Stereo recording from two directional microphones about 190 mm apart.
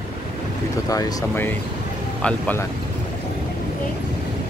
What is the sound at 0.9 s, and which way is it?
Speech, 20° left (ahead or behind).